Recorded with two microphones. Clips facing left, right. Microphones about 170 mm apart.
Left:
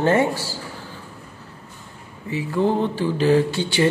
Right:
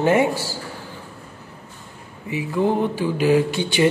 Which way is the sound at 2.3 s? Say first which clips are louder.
Even; 15° right (ahead or behind).